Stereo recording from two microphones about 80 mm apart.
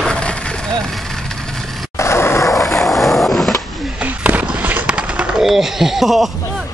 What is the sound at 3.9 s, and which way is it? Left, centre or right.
Fireworks, right.